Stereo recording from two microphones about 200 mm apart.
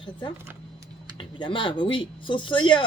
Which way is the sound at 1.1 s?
25° left (ahead or behind).